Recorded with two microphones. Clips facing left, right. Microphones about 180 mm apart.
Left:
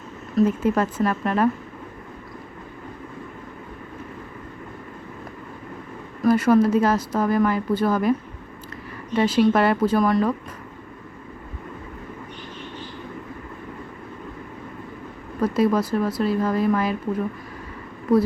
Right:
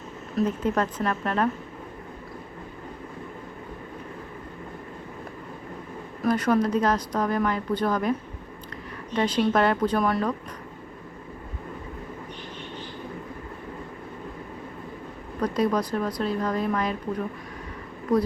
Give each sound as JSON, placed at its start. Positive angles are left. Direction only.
{"t": 0.3, "sound": "a woman's voice", "side_deg": 10}
{"t": 6.2, "sound": "a woman's voice", "side_deg": 5}
{"t": 9.1, "sound": "speech", "side_deg": 5}
{"t": 15.4, "sound": "speech", "side_deg": 5}